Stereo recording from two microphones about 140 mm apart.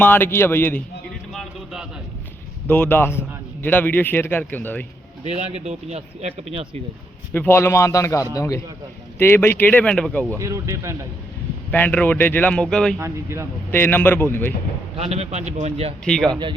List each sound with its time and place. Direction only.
0.0 s a man's voice: 15° left (ahead or behind)
1.3 s a sound: centre (ahead or behind)
2.6 s a man's voice: 15° left (ahead or behind)
5.2 s speech: 50° right (ahead or behind)
7.3 s a man's voice: 15° left (ahead or behind)
10.3 s speech: 20° right (ahead or behind)
11.7 s a man's voice: 10° left (ahead or behind)
13.0 s speech: 20° right (ahead or behind)
13.7 s a man's voice: 15° left (ahead or behind)
14.9 s speech: 50° right (ahead or behind)
16.0 s speech: 5° left (ahead or behind)